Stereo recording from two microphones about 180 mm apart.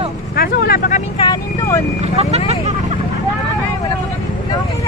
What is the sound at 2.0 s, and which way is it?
Vehicle, 35° right (ahead or behind).